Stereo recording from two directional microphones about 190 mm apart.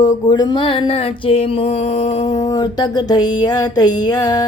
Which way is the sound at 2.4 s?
20° left (ahead or behind).